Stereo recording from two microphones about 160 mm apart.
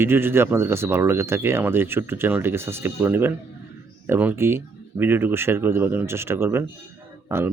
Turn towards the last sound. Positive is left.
turn(degrees=-15)  # may be behind; listen again after turning